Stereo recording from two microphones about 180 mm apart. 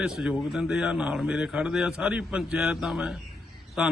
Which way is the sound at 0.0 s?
5° right (ahead or behind).